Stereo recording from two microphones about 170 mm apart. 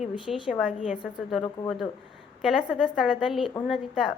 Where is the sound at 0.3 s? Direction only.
Centre (ahead or behind).